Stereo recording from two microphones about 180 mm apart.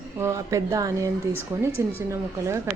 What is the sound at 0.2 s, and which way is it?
A woman's voice, 15° right (ahead or behind).